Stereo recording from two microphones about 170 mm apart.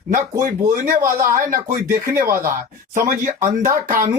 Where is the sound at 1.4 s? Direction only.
55° right (ahead or behind).